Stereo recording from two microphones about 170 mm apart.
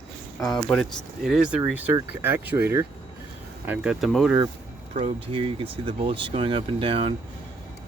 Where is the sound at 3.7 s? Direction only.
Centre (ahead or behind).